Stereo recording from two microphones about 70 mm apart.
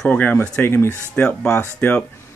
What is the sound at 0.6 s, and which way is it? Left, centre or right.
Speech, left.